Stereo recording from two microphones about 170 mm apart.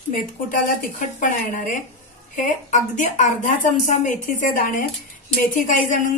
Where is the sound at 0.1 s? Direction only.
55° left (ahead or behind).